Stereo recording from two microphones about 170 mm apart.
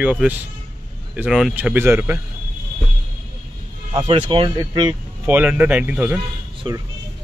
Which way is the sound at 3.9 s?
30° right (ahead or behind).